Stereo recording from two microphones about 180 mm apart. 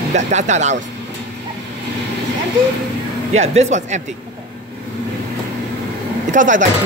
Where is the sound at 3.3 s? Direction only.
40° right (ahead or behind).